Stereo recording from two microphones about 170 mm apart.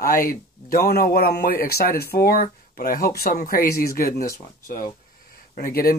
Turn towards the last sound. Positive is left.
turn(degrees=60)  # may be behind; listen again after turning